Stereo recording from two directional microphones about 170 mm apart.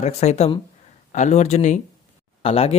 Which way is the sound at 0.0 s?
40° left (ahead or behind).